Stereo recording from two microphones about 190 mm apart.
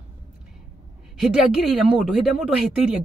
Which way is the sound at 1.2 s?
Centre (ahead or behind).